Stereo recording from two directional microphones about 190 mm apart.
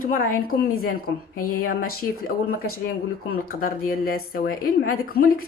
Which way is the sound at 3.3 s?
50° left (ahead or behind).